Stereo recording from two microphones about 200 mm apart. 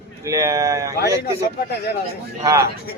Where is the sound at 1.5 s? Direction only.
50° left (ahead or behind).